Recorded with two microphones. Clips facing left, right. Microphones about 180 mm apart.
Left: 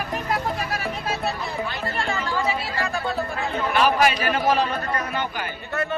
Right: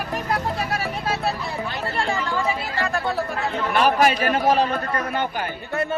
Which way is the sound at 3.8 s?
50° right (ahead or behind).